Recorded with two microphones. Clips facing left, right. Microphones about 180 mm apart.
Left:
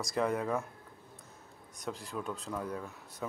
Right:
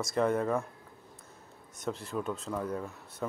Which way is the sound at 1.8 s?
Centre (ahead or behind).